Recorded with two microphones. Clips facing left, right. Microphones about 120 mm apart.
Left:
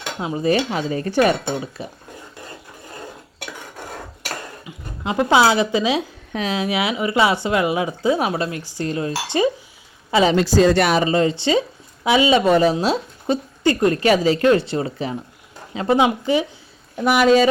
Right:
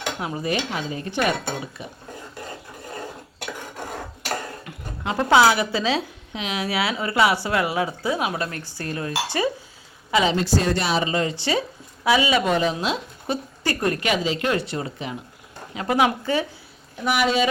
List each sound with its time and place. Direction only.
0.2 s speech: 20° left (ahead or behind)
0.5 s a woman's voice: 40° left (ahead or behind)
1.8 s a woman's voice: 35° left (ahead or behind)
5.0 s speech: 20° left (ahead or behind)
6.3 s a woman's voice: 40° left (ahead or behind)
6.6 s speech: 20° left (ahead or behind)
8.2 s a woman's voice: 35° left (ahead or behind)
8.8 s speech: 25° left (ahead or behind)
10.3 s a woman's voice: 90° left
11.0 s a woman's voice: 30° left (ahead or behind)
12.5 s a woman's voice: 35° left (ahead or behind)
16.0 s speech: 15° left (ahead or behind)
17.0 s speech: 45° left (ahead or behind)